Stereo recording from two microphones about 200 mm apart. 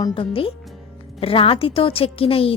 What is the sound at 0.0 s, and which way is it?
A woman's voice, 25° left (ahead or behind).